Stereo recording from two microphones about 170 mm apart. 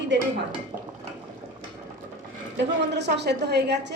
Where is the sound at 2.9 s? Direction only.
85° right.